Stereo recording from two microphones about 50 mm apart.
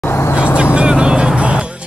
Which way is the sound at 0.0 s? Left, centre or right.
Left.